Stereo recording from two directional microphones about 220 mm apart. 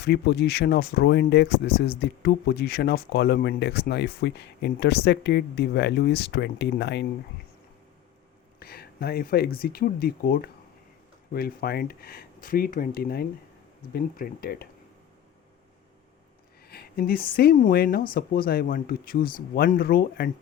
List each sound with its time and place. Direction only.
0.0 s speech: 50° left (ahead or behind)
8.5 s a sound: 45° left (ahead or behind)
9.6 s speech: 45° left (ahead or behind)
16.6 s speech: 45° left (ahead or behind)